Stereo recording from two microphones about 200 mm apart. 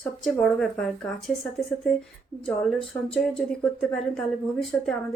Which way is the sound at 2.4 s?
5° left (ahead or behind).